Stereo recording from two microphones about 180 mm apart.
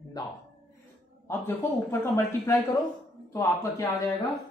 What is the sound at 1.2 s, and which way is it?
A man's voice, 15° left (ahead or behind).